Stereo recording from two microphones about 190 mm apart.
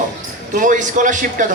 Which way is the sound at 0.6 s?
40° right (ahead or behind).